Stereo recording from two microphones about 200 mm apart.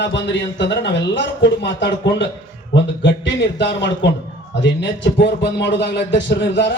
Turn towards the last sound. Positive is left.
turn(degrees=65)  # may be behind; listen again after turning